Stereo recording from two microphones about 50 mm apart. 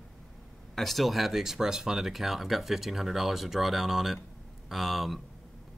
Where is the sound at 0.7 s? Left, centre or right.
Centre.